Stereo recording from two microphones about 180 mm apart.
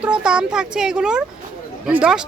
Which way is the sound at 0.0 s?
5° right (ahead or behind).